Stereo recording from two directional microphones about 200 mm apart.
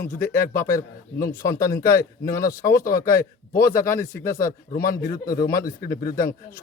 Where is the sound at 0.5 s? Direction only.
15° left (ahead or behind).